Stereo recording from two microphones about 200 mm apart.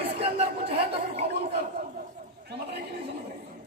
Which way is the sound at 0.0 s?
30° right (ahead or behind).